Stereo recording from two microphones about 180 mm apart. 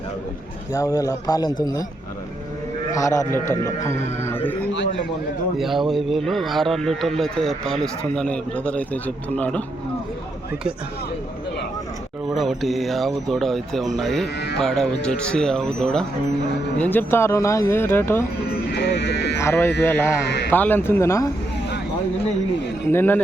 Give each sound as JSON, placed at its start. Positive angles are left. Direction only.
{"t": 0.7, "sound": "a man's voice", "side_deg": 20}
{"t": 2.9, "sound": "speech", "side_deg": 15}
{"t": 4.7, "sound": "a man's voice", "side_deg": 85}
{"t": 5.5, "sound": "a man's voice", "side_deg": 0}
{"t": 12.3, "sound": "a man's voice", "side_deg": 0}
{"t": 18.7, "sound": "speech", "side_deg": 70}
{"t": 19.4, "sound": "speech", "side_deg": 15}
{"t": 20.2, "sound": "speech", "side_deg": 70}
{"t": 20.5, "sound": "speech", "side_deg": 10}
{"t": 22.9, "sound": "speech", "side_deg": 10}